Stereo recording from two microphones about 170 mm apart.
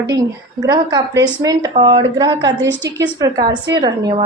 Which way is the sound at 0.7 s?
20° right (ahead or behind).